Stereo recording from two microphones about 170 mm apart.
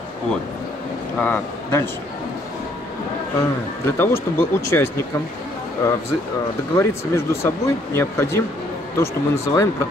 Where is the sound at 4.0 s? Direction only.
15° left (ahead or behind).